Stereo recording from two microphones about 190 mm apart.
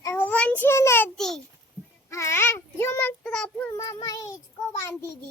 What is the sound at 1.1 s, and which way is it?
Speech, centre (ahead or behind).